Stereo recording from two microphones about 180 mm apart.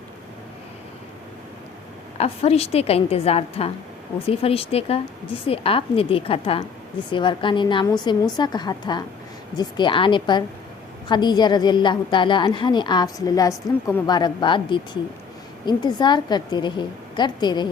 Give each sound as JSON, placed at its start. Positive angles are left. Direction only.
{"t": 2.1, "sound": "a woman's voice", "side_deg": 35}